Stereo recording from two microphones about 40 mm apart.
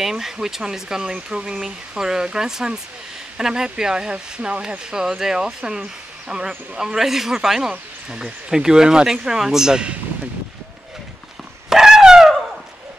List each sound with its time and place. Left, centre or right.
0.0 s speech: centre
7.0 s speech: centre
11.7 s dog: centre